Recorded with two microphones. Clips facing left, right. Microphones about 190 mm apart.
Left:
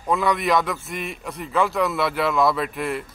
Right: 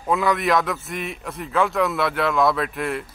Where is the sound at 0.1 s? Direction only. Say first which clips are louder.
Right 1 dB; centre (ahead or behind).